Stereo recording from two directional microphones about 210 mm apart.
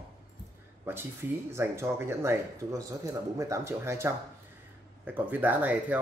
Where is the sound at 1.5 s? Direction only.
10° right (ahead or behind).